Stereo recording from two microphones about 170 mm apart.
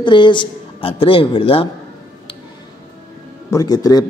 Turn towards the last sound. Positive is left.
turn(degrees=20)  # may be behind; listen again after turning